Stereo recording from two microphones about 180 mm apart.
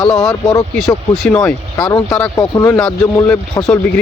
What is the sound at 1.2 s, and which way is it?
Speech, 5° left (ahead or behind).